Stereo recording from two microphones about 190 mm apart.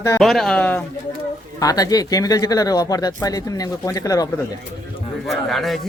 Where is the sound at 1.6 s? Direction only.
20° left (ahead or behind).